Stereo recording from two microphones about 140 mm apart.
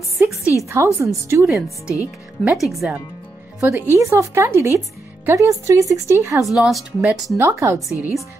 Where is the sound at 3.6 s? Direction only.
20° right (ahead or behind).